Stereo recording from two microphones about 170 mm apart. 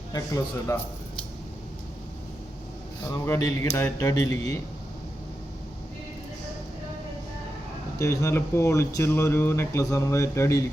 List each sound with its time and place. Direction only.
0.1 s a man's voice: 20° left (ahead or behind)
3.1 s speech: 20° left (ahead or behind)
7.9 s speech: 20° left (ahead or behind)